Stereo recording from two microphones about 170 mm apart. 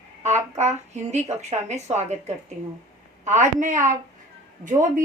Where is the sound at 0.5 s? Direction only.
40° right (ahead or behind).